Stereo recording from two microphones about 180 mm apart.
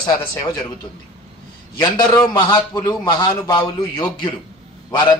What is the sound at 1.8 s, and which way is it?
Speech, 20° left (ahead or behind).